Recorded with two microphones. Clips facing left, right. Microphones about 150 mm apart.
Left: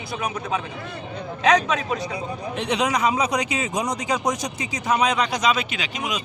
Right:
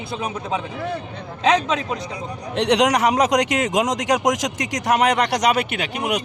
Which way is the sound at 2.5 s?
85° right.